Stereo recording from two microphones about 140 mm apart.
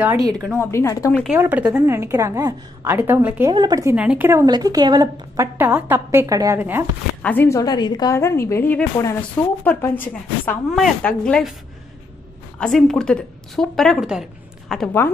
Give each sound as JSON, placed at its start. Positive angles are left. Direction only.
{"t": 0.3, "sound": "a woman's voice", "side_deg": 0}
{"t": 0.6, "sound": "a woman's voice", "side_deg": 20}
{"t": 1.3, "sound": "a woman's voice", "side_deg": -10}
{"t": 3.5, "sound": "a woman's voice", "side_deg": -30}
{"t": 3.9, "sound": "a woman's voice", "side_deg": -10}
{"t": 4.5, "sound": "a woman's voice", "side_deg": -30}
{"t": 5.6, "sound": "a woman's voice", "side_deg": -15}
{"t": 7.2, "sound": "speech", "side_deg": 10}
{"t": 7.4, "sound": "a woman's voice", "side_deg": 25}
{"t": 12.5, "sound": "a woman's voice", "side_deg": 5}